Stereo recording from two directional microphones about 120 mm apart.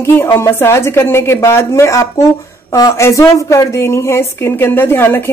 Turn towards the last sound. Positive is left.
turn(degrees=20)  # may be behind; listen again after turning